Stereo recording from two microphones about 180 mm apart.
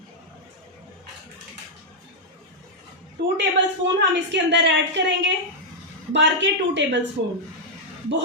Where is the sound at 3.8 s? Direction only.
75° right (ahead or behind).